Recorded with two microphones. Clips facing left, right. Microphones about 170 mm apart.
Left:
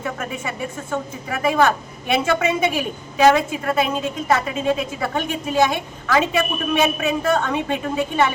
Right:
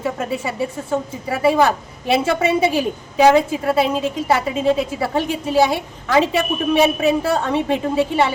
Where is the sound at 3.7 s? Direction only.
30° right (ahead or behind).